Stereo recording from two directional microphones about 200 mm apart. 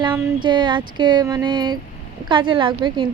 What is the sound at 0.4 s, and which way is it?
A woman's voice, 25° right (ahead or behind).